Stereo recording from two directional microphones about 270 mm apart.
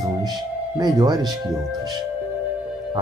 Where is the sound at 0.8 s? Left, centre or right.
Centre.